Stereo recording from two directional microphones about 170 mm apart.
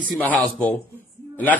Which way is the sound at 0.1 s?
10° left (ahead or behind).